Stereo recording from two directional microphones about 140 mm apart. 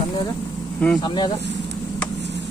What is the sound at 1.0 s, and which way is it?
Speech, 35° left (ahead or behind).